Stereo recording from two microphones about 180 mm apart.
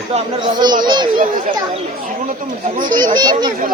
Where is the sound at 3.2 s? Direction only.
25° right (ahead or behind).